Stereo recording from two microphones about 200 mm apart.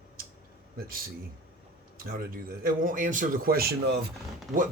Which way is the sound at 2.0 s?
45° right (ahead or behind).